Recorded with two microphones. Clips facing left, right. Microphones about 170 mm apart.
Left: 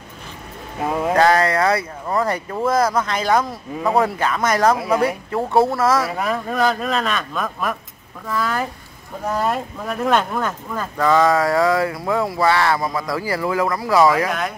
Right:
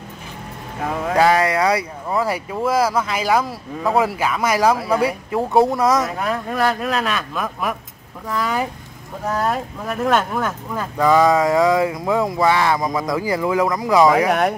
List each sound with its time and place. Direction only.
1.1 s speech: 10° right (ahead or behind)
5.7 s speech: 15° right (ahead or behind)
6.0 s speech: centre (ahead or behind)
8.3 s speech: 15° right (ahead or behind)
9.2 s speech: centre (ahead or behind); by 14.1 s 15° right (ahead or behind)